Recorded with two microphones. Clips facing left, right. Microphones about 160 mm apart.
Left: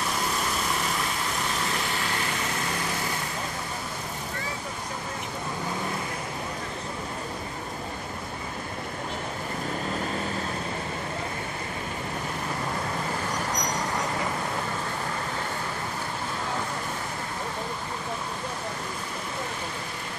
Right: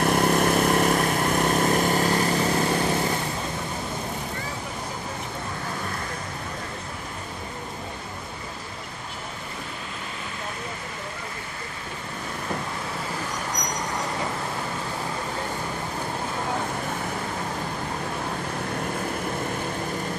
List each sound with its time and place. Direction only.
0.0 s vehicle: 60° right (ahead or behind); by 2.8 s 35° right (ahead or behind)